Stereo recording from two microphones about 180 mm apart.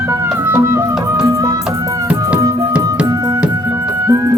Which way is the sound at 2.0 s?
10° right (ahead or behind).